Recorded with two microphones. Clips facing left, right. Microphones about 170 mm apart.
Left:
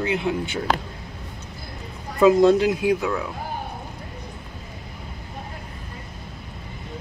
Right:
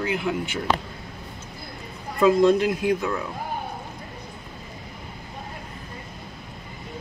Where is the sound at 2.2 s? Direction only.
15° left (ahead or behind).